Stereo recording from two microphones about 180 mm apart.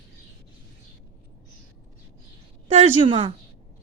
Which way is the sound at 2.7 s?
30° right (ahead or behind).